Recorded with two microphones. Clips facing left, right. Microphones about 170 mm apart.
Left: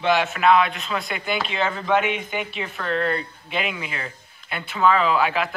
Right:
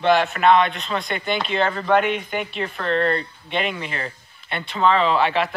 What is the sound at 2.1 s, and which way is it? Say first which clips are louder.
Speech: right 2 dB; 50° right (ahead or behind).